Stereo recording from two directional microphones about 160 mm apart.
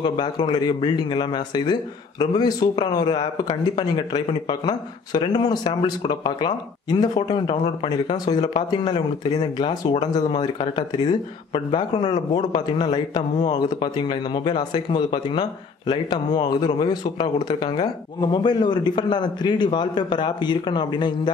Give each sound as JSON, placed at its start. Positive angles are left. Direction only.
{"t": 0.0, "sound": "speech", "side_deg": 25}